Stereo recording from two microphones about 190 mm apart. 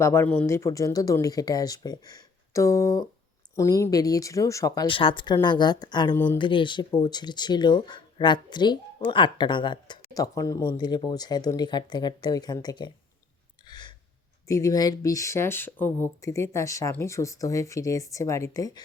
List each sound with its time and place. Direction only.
0.0 s speech: 15° left (ahead or behind)
6.1 s speech: 10° left (ahead or behind)
6.4 s speech: 25° left (ahead or behind)
13.7 s a sound: 20° left (ahead or behind)
14.4 s speech: 15° left (ahead or behind)